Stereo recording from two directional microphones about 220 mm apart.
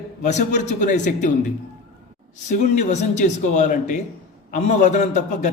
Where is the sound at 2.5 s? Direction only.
35° left (ahead or behind).